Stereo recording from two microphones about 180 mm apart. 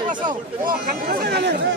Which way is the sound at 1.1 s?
65° right (ahead or behind).